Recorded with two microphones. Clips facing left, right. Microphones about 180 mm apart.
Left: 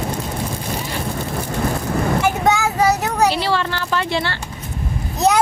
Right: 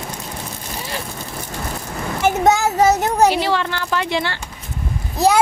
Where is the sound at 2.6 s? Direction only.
25° right (ahead or behind).